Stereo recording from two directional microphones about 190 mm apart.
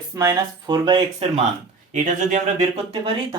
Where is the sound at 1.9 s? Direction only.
40° right (ahead or behind).